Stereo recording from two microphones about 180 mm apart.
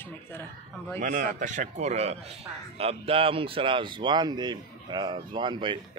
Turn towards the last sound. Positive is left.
turn(degrees=-25)  # may be behind; listen again after turning